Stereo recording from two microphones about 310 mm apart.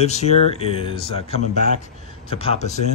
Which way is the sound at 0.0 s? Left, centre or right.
Left.